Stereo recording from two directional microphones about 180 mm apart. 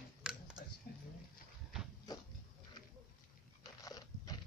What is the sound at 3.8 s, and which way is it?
Crunch, 20° left (ahead or behind).